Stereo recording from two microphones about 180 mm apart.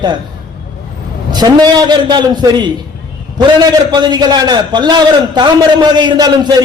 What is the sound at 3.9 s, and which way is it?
A man's voice, 25° right (ahead or behind).